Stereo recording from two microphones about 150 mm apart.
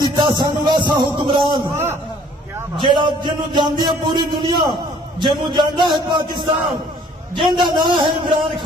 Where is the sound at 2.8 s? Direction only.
30° right (ahead or behind).